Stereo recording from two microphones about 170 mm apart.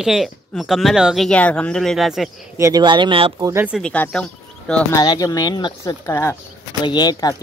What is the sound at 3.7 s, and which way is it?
Speech, 5° left (ahead or behind).